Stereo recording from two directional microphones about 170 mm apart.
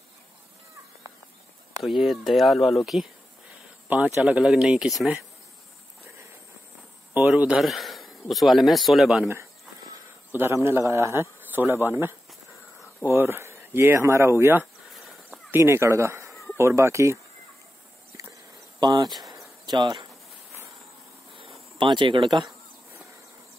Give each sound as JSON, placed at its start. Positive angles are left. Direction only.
{"t": 1.8, "sound": "speech", "side_deg": 0}
{"t": 7.2, "sound": "speech", "side_deg": -10}
{"t": 10.3, "sound": "speech", "side_deg": -15}
{"t": 18.8, "sound": "speech", "side_deg": -25}
{"t": 19.0, "sound": "speech", "side_deg": 0}
{"t": 19.6, "sound": "speech", "side_deg": -25}
{"t": 21.4, "sound": "insect", "side_deg": -30}